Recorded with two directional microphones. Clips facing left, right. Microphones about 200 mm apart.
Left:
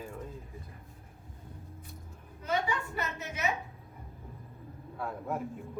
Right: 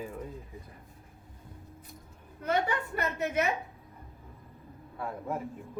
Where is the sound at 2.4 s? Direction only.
55° right (ahead or behind).